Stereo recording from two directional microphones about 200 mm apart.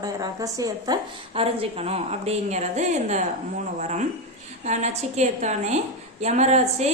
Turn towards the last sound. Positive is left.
turn(degrees=-35)  # may be behind; listen again after turning